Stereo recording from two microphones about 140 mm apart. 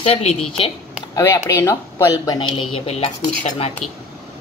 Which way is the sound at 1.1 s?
25° left (ahead or behind).